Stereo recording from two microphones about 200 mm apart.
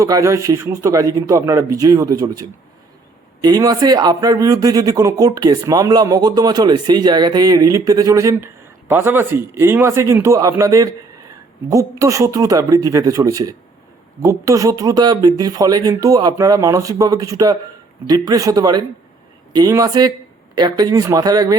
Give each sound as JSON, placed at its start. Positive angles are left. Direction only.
{"t": 0.0, "sound": "a man's voice", "side_deg": -15}